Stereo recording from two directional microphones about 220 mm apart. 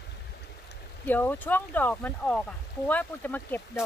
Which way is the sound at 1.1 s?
10° left (ahead or behind).